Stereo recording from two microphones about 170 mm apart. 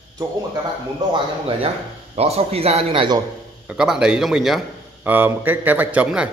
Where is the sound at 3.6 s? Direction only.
5° right (ahead or behind).